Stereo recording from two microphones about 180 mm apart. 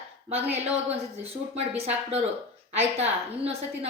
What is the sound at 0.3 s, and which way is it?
A woman's voice, 35° right (ahead or behind).